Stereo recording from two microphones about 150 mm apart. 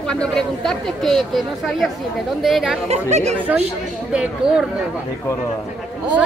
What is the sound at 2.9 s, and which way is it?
Speech, 45° right (ahead or behind).